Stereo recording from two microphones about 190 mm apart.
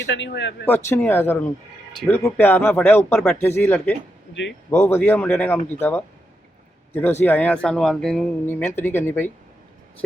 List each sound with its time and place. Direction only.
0.0 s speech: 65° left (ahead or behind)
0.7 s speech: 10° left (ahead or behind)
6.9 s speech: 10° left (ahead or behind)